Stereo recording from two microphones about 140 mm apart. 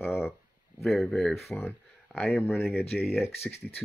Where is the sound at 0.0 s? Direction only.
15° left (ahead or behind).